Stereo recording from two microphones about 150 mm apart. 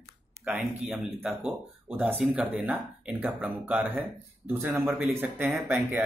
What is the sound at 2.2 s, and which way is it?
Speech, 10° right (ahead or behind).